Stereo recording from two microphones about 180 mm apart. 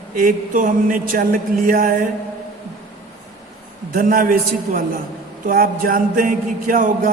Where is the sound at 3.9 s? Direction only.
50° right (ahead or behind).